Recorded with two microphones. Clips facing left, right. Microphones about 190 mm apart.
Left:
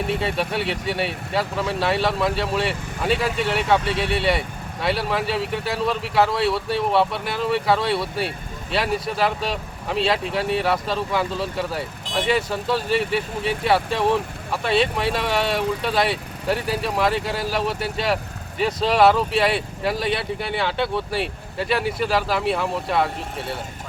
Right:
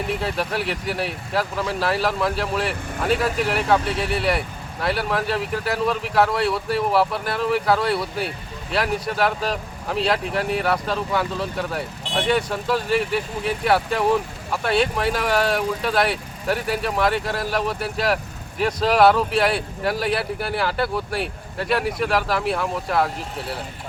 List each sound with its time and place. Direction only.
0.2 s speech: centre (ahead or behind)